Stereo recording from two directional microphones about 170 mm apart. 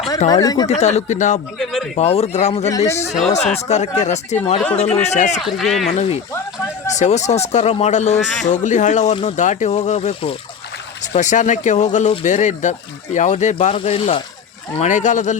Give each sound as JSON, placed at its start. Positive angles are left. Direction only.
{"t": 0.3, "sound": "speech", "side_deg": 20}
{"t": 0.7, "sound": "speech", "side_deg": 40}
{"t": 1.5, "sound": "a sound", "side_deg": 0}
{"t": 2.0, "sound": "speech", "side_deg": 40}
{"t": 5.4, "sound": "speech", "side_deg": 0}
{"t": 5.9, "sound": "speech", "side_deg": 40}